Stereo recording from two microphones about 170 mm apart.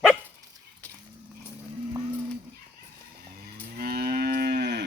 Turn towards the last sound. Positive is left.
turn(degrees=-70)  # may be behind; listen again after turning